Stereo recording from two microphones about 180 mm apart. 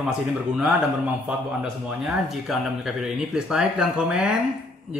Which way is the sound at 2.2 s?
Centre (ahead or behind).